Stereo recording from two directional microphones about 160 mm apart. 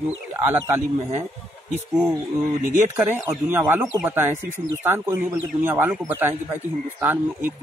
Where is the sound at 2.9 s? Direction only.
15° right (ahead or behind).